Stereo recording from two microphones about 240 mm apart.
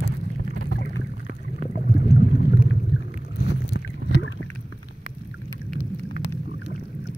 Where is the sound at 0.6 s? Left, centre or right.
Left.